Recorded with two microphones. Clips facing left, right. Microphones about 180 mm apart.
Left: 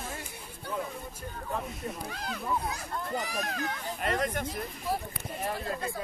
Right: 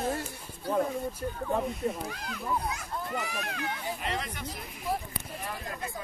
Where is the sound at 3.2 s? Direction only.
40° left (ahead or behind).